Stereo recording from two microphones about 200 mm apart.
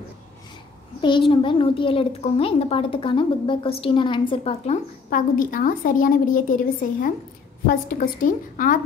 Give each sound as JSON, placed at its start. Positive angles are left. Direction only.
{"t": 1.0, "sound": "a child's voice", "side_deg": 25}
{"t": 5.1, "sound": "a woman's voice", "side_deg": 45}